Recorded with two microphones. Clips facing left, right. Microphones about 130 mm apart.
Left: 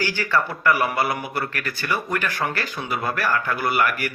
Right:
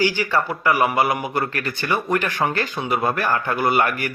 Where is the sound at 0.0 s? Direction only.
15° right (ahead or behind).